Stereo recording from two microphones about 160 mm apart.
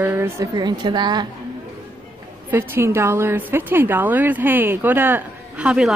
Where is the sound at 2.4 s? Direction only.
15° right (ahead or behind).